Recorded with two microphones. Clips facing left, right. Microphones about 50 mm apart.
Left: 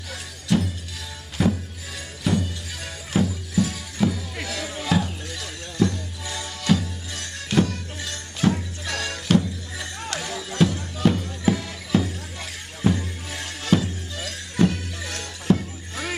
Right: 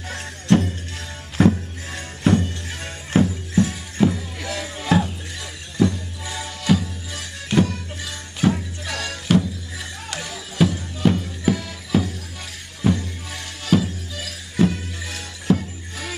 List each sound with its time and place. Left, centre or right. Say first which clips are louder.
0.1 s music: right 5 dB; right
2.2 s music: right 5 dB; right
3.6 s music: right 4 dB; right; by 16.1 s centre